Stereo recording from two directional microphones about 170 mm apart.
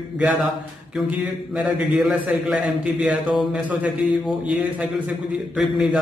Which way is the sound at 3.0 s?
Centre (ahead or behind).